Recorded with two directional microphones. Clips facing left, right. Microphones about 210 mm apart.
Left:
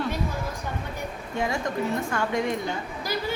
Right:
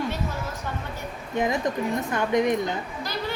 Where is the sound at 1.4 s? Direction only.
20° right (ahead or behind).